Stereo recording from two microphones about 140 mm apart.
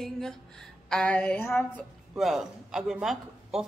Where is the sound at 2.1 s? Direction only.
Centre (ahead or behind).